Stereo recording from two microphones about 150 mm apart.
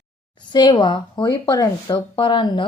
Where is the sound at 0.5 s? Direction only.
30° left (ahead or behind).